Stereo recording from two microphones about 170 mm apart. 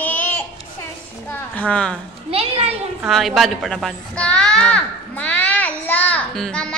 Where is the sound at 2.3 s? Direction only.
35° right (ahead or behind).